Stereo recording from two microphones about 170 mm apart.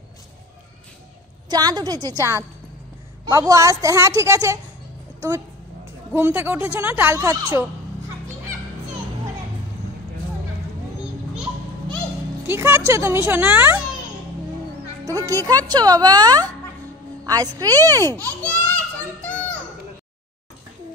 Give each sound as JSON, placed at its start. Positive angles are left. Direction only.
{"t": 1.5, "sound": "speech", "side_deg": -25}
{"t": 6.1, "sound": "speech", "side_deg": -10}
{"t": 12.4, "sound": "speech", "side_deg": -15}
{"t": 15.0, "sound": "speech", "side_deg": -20}
{"t": 18.0, "sound": "speech", "side_deg": 10}